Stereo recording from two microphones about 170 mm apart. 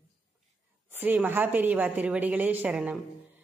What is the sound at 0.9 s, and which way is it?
A woman's voice, 10° right (ahead or behind).